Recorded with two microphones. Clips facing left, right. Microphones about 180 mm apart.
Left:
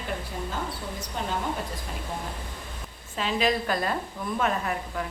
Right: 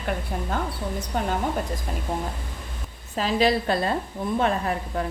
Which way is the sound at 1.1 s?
55° right (ahead or behind).